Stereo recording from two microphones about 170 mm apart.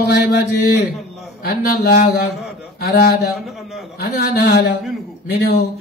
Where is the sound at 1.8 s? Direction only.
80° left.